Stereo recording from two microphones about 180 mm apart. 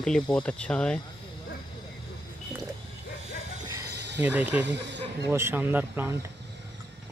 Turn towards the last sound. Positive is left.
turn(degrees=-15)  # may be behind; listen again after turning